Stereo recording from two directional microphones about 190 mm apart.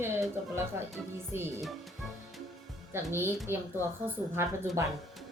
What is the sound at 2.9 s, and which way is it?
A woman's voice, 15° right (ahead or behind).